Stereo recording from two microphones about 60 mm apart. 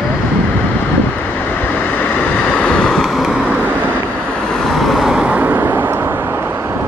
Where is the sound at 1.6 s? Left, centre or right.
Left.